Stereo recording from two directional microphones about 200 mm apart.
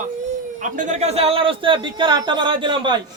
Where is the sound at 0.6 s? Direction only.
35° right (ahead or behind).